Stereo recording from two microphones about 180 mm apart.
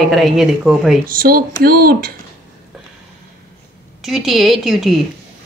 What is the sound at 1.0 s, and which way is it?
Speech, 55° right (ahead or behind).